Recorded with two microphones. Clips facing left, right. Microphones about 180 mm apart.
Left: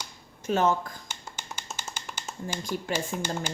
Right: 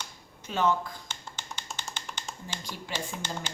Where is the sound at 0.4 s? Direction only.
45° left (ahead or behind).